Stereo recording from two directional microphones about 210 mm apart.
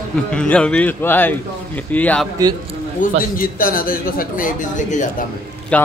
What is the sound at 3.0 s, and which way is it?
Speech, 40° left (ahead or behind).